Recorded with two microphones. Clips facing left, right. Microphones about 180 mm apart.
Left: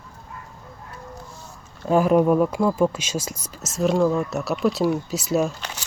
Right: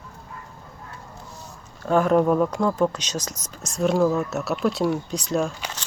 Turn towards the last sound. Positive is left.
turn(degrees=5)  # may be behind; listen again after turning